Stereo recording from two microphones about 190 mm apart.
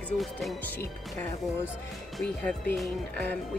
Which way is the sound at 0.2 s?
Centre (ahead or behind).